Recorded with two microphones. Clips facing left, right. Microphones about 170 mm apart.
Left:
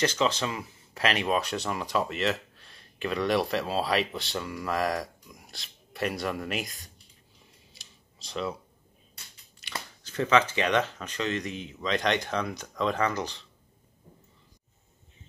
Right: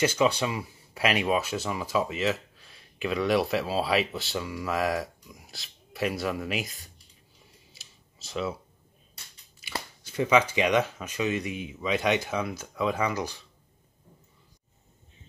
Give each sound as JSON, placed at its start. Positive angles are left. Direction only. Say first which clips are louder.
{"t": 0.0, "sound": "speech", "louder": "right 2 dB", "side_deg": -10}
{"t": 7.7, "sound": "a sound", "louder": "even", "side_deg": -5}
{"t": 9.6, "sound": "speech", "louder": "right 2 dB", "side_deg": -10}